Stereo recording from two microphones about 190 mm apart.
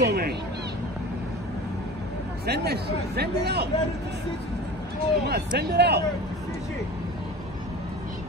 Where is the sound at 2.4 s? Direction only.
60° right (ahead or behind).